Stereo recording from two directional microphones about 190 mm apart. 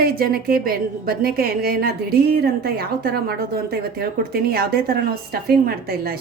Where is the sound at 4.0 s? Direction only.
55° right (ahead or behind).